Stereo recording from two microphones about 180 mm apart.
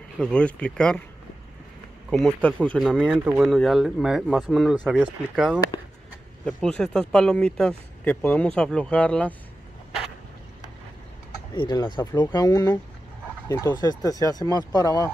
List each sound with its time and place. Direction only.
0.2 s speech: 5° left (ahead or behind)
2.0 s speech: 5° left (ahead or behind)
11.5 s speech: 25° left (ahead or behind)